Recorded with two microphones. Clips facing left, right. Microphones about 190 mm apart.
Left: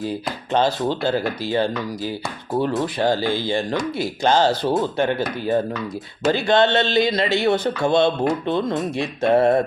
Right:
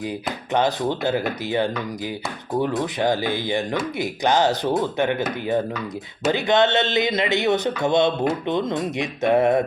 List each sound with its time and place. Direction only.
0.0 s speech: 15° right (ahead or behind)